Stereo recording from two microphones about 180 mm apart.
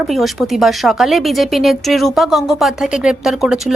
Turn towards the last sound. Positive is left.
turn(degrees=0)  # may be behind; listen again after turning